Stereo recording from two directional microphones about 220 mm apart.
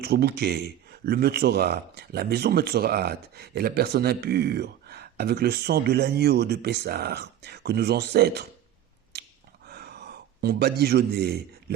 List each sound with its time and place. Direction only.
0.0 s speech: 45° right (ahead or behind)
9.6 s gasp: 45° right (ahead or behind)